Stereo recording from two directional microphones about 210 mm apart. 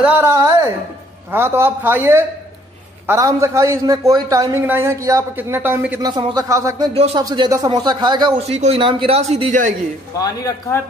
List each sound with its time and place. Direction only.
0.0 s a woman's voice: 10° right (ahead or behind); by 9.8 s 35° right (ahead or behind)
10.1 s a man's voice: 15° left (ahead or behind)